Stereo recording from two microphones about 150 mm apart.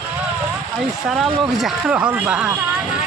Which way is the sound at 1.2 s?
Centre (ahead or behind).